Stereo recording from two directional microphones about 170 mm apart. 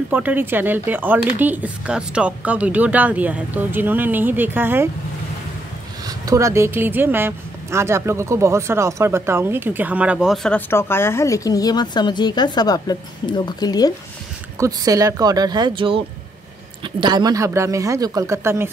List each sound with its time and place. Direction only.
0.1 s a woman's voice: 10° right (ahead or behind)
6.0 s a woman's voice: 20° right (ahead or behind); by 10.6 s centre (ahead or behind)
10.7 s a woman's voice: 15° left (ahead or behind)
14.6 s speech: 20° right (ahead or behind)